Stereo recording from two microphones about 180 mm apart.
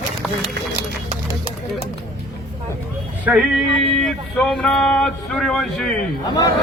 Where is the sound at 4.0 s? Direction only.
5° left (ahead or behind).